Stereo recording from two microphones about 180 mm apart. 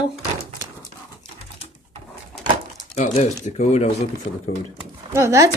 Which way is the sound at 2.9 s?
35° left (ahead or behind).